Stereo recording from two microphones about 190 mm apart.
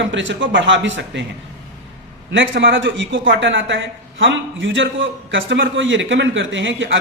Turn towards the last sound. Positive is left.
turn(degrees=-75)  # may be behind; listen again after turning